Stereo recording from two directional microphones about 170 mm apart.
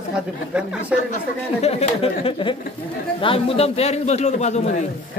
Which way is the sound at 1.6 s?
40° left (ahead or behind).